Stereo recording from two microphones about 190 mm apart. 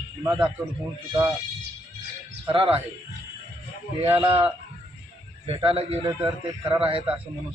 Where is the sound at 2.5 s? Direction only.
30° right (ahead or behind).